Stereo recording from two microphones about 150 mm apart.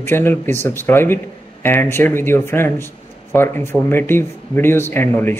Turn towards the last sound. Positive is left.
turn(degrees=15)  # may be behind; listen again after turning